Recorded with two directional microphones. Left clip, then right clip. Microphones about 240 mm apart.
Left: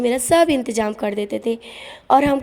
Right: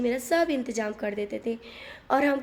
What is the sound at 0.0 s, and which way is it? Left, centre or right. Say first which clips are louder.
A woman's voice: left 9 dB; left.